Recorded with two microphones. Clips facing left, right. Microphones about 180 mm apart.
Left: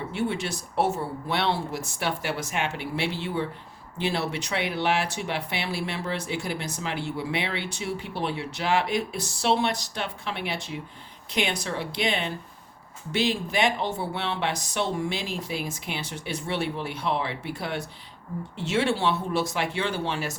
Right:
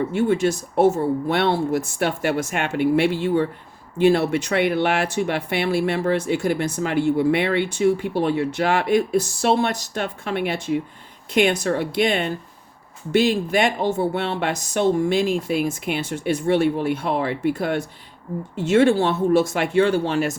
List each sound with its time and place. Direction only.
0.1 s speech: 45° right (ahead or behind)